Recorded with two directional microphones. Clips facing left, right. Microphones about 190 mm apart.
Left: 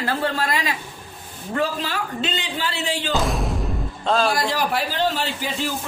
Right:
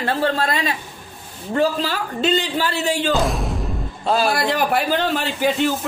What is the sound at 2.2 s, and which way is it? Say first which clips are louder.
Speech: right 7 dB; 45° right (ahead or behind).